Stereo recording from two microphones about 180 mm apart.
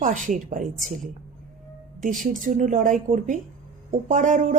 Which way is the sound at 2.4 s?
45° right (ahead or behind).